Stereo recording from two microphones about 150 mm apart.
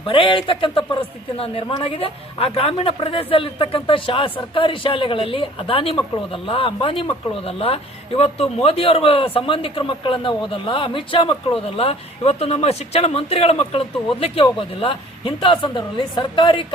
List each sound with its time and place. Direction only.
0.0 s speech: 35° left (ahead or behind)